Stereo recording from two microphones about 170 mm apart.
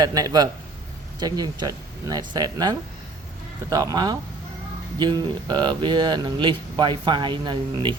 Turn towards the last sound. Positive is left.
turn(degrees=-25)  # may be behind; listen again after turning